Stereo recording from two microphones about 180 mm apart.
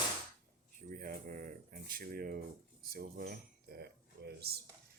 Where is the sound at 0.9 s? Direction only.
50° right (ahead or behind).